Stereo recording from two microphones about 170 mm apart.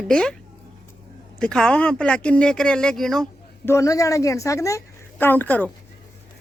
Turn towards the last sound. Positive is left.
turn(degrees=10)  # may be behind; listen again after turning